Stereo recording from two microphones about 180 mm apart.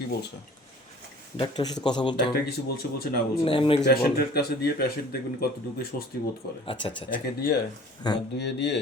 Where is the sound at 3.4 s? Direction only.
30° left (ahead or behind).